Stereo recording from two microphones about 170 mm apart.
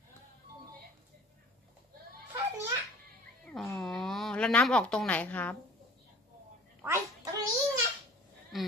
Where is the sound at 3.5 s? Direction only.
Centre (ahead or behind).